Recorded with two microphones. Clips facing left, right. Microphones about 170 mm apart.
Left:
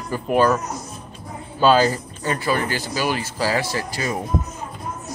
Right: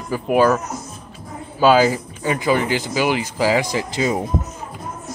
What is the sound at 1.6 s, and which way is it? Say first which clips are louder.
Speech: right 2 dB; 10° right (ahead or behind).